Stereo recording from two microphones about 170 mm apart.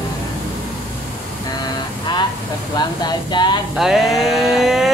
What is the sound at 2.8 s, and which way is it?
Speech, 25° left (ahead or behind).